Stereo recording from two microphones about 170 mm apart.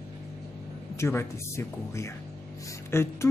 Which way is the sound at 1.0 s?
15° left (ahead or behind).